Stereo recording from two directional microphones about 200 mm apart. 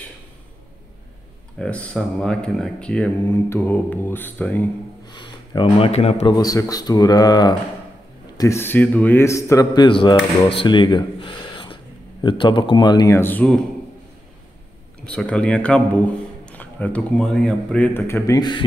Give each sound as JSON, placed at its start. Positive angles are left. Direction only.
{"t": 1.6, "sound": "speech", "side_deg": 5}
{"t": 5.0, "sound": "speech", "side_deg": 20}
{"t": 6.2, "sound": "speech", "side_deg": 20}
{"t": 15.0, "sound": "speech", "side_deg": 5}